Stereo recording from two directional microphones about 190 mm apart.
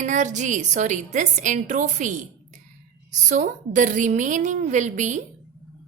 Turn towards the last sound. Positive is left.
turn(degrees=-40)  # may be behind; listen again after turning